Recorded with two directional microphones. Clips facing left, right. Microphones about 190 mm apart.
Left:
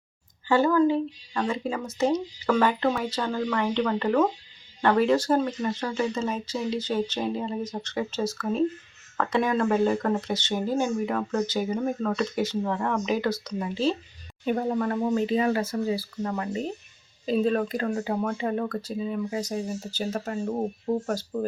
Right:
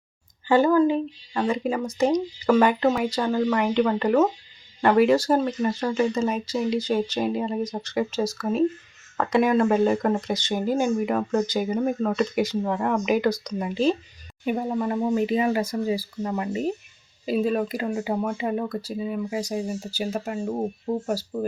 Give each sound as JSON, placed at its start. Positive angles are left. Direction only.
{"t": 0.4, "sound": "speech", "side_deg": -15}